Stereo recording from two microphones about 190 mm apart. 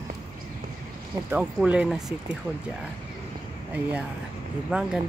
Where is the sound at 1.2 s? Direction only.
5° right (ahead or behind).